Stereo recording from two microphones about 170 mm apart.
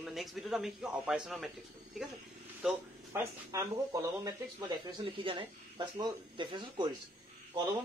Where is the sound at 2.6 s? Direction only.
5° right (ahead or behind).